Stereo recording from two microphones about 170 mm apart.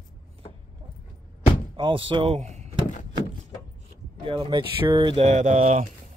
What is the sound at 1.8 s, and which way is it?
Speech, 30° right (ahead or behind).